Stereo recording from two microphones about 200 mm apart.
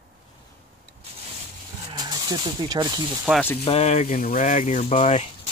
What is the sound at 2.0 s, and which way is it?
Speech, 20° right (ahead or behind).